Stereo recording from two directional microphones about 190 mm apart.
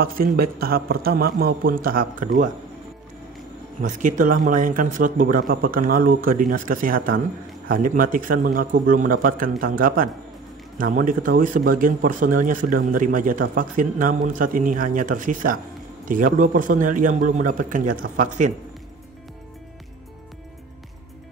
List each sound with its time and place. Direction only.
0.0 s speech: 50° right (ahead or behind)
3.8 s speech: 40° right (ahead or behind)